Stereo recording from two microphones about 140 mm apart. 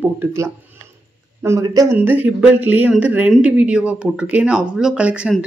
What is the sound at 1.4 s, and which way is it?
Speech, 20° right (ahead or behind).